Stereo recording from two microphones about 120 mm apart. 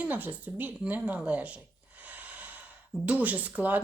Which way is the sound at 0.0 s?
15° right (ahead or behind).